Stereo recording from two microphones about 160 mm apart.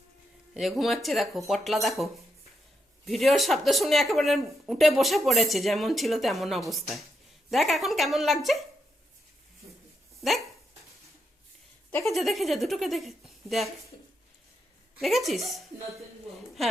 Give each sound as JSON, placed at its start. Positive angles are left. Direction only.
{"t": 0.5, "sound": "speech", "side_deg": 0}
{"t": 3.1, "sound": "speech", "side_deg": 0}
{"t": 10.2, "sound": "dog", "side_deg": 0}
{"t": 12.0, "sound": "speech", "side_deg": 0}
{"t": 15.0, "sound": "speech", "side_deg": 0}